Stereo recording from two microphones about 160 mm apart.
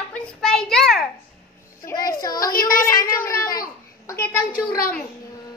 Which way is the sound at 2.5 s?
65° left (ahead or behind).